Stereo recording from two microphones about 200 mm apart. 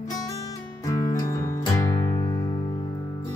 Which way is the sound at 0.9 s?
15° left (ahead or behind).